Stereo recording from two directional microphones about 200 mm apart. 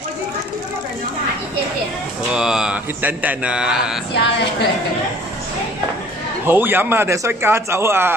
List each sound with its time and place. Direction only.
2.3 s speech: 5° right (ahead or behind)
4.1 s a woman's voice: 55° left (ahead or behind)
6.4 s speech: 10° right (ahead or behind)